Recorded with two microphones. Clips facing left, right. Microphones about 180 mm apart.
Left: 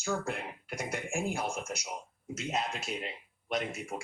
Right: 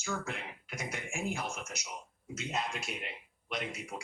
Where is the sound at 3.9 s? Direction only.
55° left (ahead or behind).